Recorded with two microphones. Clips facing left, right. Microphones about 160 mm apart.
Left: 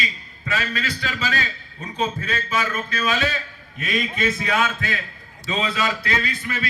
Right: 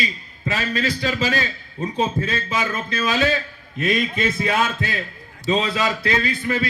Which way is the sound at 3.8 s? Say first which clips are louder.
Right 3 dB; 35° right (ahead or behind).